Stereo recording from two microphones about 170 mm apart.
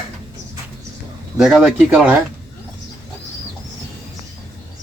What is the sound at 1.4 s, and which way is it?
Speech, 5° right (ahead or behind).